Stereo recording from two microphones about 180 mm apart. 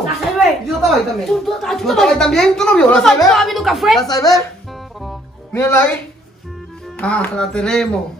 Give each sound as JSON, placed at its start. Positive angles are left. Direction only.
{"t": 0.4, "sound": "speech", "side_deg": 0}
{"t": 4.1, "sound": "speech", "side_deg": 20}
{"t": 5.5, "sound": "speech", "side_deg": 10}
{"t": 7.0, "sound": "speech", "side_deg": 5}